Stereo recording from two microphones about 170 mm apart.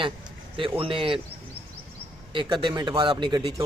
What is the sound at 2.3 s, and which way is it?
A man's voice, 30° right (ahead or behind).